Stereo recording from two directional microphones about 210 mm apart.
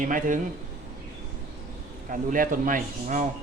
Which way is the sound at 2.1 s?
40° right (ahead or behind).